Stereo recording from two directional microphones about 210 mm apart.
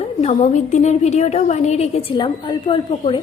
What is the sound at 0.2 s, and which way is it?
A woman's voice, 30° left (ahead or behind).